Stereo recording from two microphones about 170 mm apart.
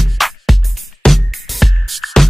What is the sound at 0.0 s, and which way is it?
Music, centre (ahead or behind).